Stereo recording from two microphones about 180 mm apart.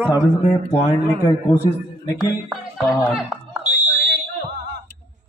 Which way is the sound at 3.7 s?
55° right (ahead or behind).